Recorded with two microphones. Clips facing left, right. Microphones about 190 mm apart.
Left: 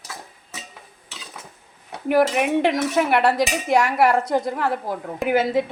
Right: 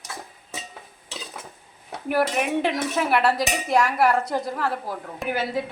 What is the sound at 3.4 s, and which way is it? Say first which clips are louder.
Cutlery: left 3 dB; centre (ahead or behind).